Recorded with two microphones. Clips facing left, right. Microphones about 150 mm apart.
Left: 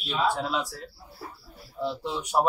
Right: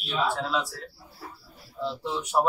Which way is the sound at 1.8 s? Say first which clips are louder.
Even; 15° left (ahead or behind).